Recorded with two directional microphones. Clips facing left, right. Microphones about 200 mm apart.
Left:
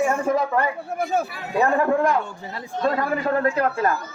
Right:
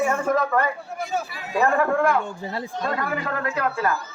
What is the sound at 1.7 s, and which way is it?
Speech, 20° left (ahead or behind).